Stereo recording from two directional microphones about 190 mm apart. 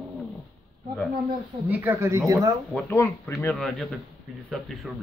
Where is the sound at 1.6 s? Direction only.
10° right (ahead or behind).